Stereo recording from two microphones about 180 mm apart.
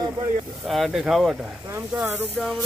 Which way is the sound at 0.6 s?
Centre (ahead or behind).